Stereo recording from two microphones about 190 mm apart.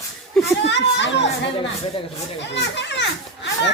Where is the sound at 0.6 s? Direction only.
70° left (ahead or behind).